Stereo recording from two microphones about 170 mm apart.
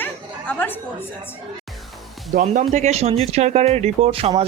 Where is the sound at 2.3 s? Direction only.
45° right (ahead or behind).